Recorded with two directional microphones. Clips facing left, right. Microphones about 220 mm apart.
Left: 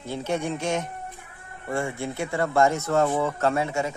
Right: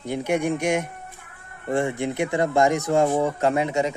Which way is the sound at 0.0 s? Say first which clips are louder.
Right 4 dB; 15° right (ahead or behind).